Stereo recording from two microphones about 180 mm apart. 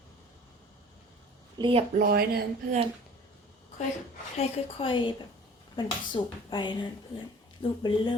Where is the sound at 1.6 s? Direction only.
30° right (ahead or behind).